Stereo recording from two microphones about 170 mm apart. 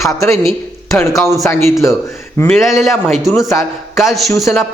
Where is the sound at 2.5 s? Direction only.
Centre (ahead or behind).